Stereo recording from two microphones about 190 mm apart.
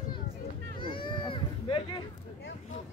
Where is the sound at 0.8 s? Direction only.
25° left (ahead or behind).